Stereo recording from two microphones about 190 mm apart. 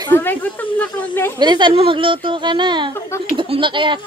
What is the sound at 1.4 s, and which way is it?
Speech, 25° right (ahead or behind).